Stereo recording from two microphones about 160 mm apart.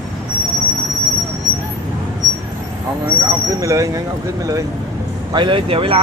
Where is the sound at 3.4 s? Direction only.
20° right (ahead or behind).